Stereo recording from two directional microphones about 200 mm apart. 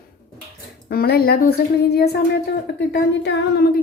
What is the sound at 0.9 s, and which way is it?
Speech, 50° left (ahead or behind).